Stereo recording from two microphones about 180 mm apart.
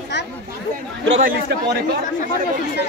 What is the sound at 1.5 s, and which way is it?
Speech, 70° right (ahead or behind).